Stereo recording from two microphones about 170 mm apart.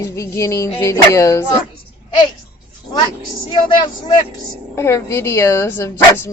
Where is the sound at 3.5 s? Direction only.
25° left (ahead or behind).